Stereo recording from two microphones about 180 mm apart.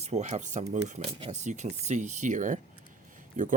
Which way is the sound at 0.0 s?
40° right (ahead or behind).